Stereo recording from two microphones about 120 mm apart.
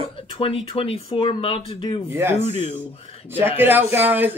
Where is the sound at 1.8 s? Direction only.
35° left (ahead or behind).